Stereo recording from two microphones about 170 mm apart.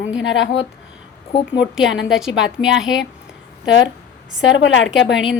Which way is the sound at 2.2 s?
5° right (ahead or behind).